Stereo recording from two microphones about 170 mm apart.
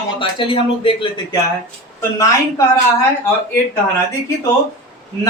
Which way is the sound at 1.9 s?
15° left (ahead or behind).